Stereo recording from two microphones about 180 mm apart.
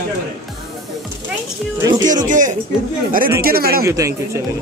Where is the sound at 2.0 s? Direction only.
45° right (ahead or behind).